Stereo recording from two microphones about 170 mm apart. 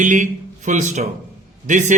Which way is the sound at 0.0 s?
45° right (ahead or behind).